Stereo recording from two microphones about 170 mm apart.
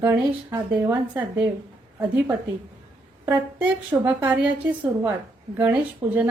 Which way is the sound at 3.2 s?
10° right (ahead or behind).